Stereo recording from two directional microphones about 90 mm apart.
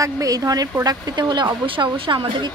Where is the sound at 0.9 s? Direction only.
55° right (ahead or behind).